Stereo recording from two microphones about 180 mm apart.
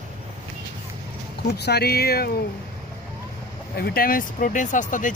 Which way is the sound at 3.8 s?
55° left (ahead or behind).